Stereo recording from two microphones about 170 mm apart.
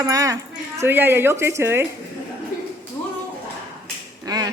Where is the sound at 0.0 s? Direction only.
20° right (ahead or behind).